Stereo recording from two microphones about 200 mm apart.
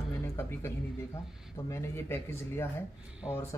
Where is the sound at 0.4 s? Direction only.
10° left (ahead or behind).